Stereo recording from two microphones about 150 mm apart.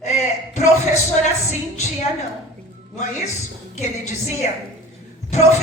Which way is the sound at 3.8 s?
50° left (ahead or behind).